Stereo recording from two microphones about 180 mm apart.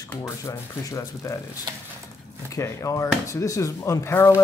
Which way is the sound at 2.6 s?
15° left (ahead or behind).